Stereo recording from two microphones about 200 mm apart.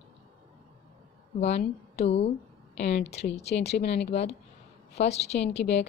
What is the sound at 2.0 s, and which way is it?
Speech, 30° left (ahead or behind).